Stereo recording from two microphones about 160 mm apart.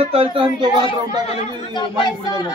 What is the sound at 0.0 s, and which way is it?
Speech, 35° right (ahead or behind).